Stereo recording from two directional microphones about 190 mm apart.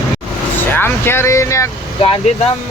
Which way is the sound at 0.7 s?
10° left (ahead or behind).